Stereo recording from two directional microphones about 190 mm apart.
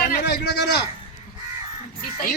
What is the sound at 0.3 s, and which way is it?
Speech, 60° left (ahead or behind).